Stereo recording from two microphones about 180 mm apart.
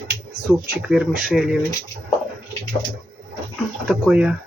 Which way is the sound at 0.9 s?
5° right (ahead or behind).